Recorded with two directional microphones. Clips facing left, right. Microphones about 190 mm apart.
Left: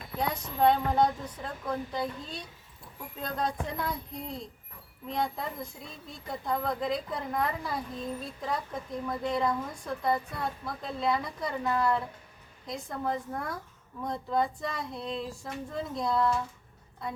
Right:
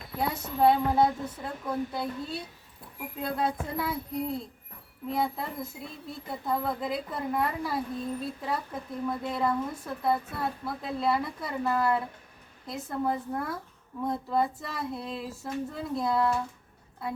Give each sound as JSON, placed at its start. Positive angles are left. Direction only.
{"t": 0.2, "sound": "a woman's voice", "side_deg": -5}